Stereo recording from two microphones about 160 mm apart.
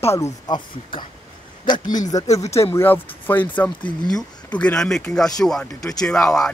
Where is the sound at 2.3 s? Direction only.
20° left (ahead or behind).